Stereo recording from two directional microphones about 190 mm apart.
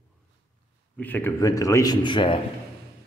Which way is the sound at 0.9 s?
10° left (ahead or behind).